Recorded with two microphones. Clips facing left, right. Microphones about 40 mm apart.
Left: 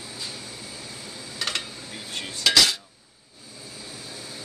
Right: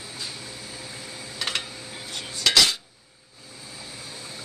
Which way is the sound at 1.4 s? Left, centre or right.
Centre.